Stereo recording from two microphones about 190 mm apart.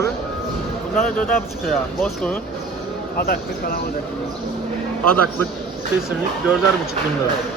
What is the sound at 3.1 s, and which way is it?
Speech, 50° left (ahead or behind).